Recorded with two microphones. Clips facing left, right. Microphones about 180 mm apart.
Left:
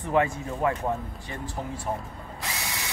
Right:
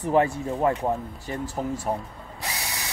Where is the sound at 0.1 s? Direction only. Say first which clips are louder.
Right 3 dB; 25° right (ahead or behind).